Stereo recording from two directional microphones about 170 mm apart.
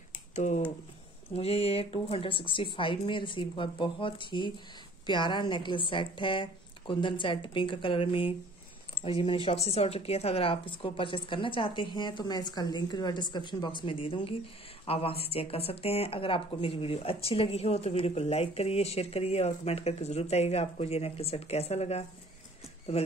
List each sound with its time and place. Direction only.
1.3 s speech: 35° left (ahead or behind)